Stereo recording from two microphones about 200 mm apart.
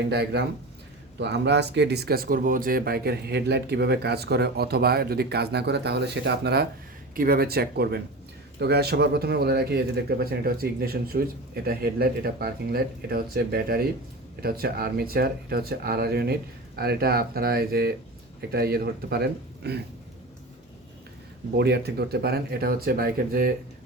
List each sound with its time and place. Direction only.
0.1 s speech: 55° right (ahead or behind)
21.5 s speech: 55° right (ahead or behind)